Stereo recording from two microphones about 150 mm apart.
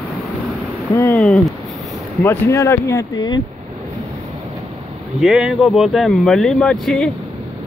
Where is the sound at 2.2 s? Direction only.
20° left (ahead or behind).